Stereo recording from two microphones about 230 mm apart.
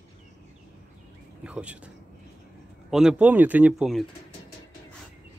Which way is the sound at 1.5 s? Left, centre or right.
Centre.